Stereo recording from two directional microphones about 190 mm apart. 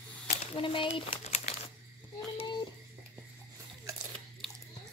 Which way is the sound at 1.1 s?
35° left (ahead or behind).